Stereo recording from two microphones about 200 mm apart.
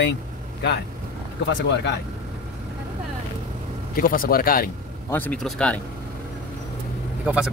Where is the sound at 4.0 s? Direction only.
45° left (ahead or behind).